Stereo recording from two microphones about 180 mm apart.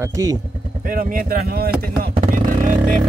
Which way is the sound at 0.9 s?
50° right (ahead or behind).